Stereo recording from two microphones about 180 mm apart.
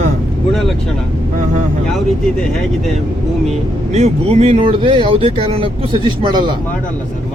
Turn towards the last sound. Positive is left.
turn(degrees=-25)  # may be behind; listen again after turning